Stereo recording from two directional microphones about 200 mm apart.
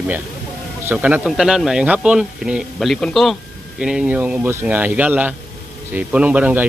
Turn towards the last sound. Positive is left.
turn(degrees=-10)  # may be behind; listen again after turning